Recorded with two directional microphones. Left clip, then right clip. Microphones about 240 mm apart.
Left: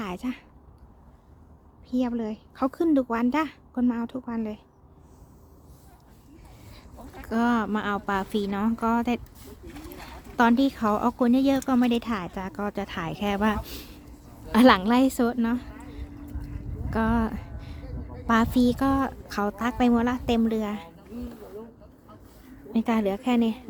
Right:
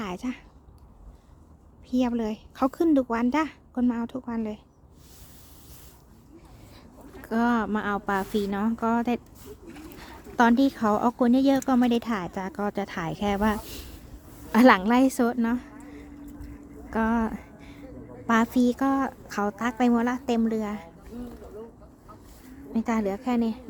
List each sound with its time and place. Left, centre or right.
0.0 s a woman's voice: centre
1.9 s speech: centre
7.2 s speech: centre
9.6 s a sound: left
10.3 s a woman's voice: centre
16.9 s a sound: centre
18.3 s speech: centre
22.7 s a woman's voice: centre